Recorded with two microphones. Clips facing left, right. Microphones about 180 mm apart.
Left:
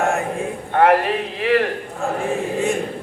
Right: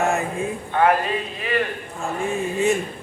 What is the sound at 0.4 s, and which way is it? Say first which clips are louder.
A man's voice: left 4 dB; 60° left (ahead or behind).